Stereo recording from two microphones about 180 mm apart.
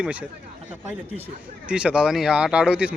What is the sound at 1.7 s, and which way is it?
Speech, 5° right (ahead or behind).